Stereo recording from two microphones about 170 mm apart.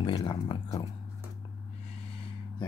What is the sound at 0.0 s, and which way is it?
Speech, 25° left (ahead or behind).